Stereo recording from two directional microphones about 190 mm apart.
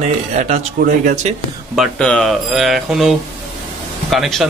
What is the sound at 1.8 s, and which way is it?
Speech, 5° left (ahead or behind).